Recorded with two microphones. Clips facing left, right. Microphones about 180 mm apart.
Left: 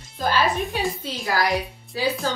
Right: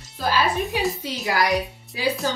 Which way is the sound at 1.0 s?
20° right (ahead or behind).